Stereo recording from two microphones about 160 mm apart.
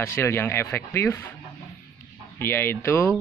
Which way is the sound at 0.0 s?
15° left (ahead or behind).